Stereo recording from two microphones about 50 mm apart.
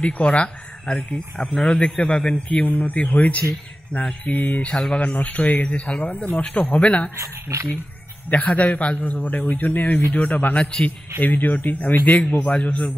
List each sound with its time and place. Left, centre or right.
0.0 s speech: left
0.9 s a man's voice: centre
2.6 s a man's voice: left
7.2 s speech: right
8.3 s speech: left
10.6 s a man's voice: centre
11.2 s speech: left
12.3 s a man's voice: left